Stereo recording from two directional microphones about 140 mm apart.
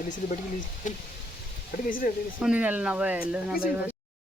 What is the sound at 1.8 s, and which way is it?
Speech, 85° left.